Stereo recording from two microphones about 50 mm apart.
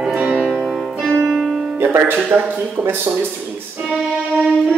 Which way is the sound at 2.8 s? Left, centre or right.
Centre.